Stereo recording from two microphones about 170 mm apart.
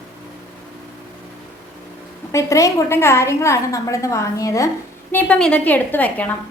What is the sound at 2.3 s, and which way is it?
A woman's voice, 20° left (ahead or behind).